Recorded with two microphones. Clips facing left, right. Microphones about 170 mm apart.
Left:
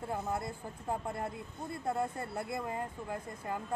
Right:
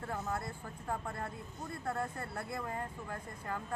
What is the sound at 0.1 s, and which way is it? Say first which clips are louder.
Speech: left 3 dB; 15° left (ahead or behind).